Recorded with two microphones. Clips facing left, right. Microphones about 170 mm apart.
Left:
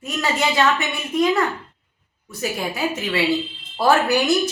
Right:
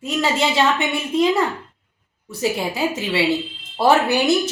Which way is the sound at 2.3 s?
30° right (ahead or behind).